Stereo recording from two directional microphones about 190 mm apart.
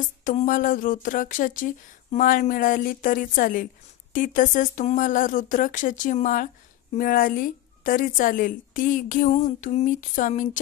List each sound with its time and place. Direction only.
0.2 s speech: 45° left (ahead or behind)